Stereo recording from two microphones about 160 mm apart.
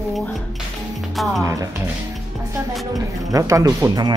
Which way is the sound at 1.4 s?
20° right (ahead or behind).